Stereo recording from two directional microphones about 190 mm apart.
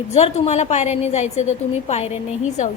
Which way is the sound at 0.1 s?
35° left (ahead or behind).